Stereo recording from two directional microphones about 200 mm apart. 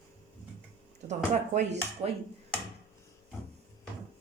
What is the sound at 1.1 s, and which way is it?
Speech, 35° right (ahead or behind).